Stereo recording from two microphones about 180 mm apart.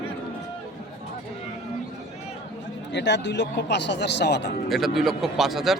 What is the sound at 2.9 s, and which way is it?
Speech, 75° left (ahead or behind).